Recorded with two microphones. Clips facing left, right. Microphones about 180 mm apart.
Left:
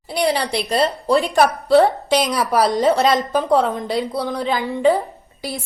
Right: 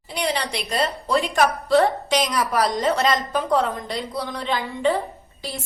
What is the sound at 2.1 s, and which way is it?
Speech, 30° left (ahead or behind).